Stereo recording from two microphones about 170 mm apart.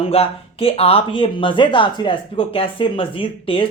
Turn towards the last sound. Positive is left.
turn(degrees=30)  # may be behind; listen again after turning